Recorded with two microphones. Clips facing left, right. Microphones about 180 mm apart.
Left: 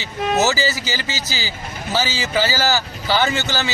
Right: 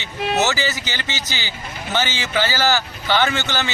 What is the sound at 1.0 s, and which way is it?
Speech, 35° left (ahead or behind).